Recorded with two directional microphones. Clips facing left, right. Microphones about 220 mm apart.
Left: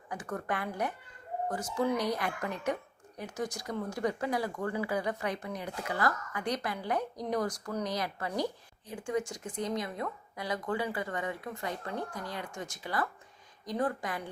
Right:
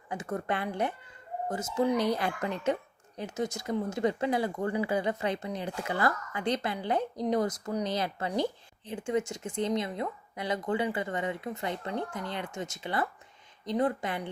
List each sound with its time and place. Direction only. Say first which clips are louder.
0.1 s speech: right 3 dB; 25° right (ahead or behind)